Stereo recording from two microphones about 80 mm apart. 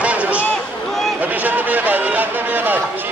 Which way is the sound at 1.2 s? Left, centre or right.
Right.